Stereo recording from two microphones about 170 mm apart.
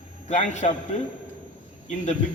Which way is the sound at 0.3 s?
45° left (ahead or behind).